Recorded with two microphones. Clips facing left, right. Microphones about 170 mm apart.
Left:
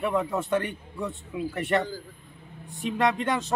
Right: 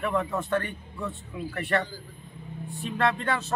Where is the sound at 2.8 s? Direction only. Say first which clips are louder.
Left 2 dB; 15° left (ahead or behind).